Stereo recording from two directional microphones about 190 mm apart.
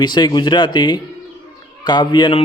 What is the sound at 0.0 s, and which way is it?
A man's voice, 25° left (ahead or behind).